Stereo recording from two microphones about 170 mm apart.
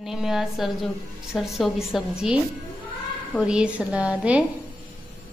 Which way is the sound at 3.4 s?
5° right (ahead or behind).